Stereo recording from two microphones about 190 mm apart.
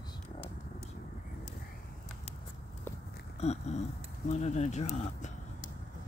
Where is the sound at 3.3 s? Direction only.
35° left (ahead or behind).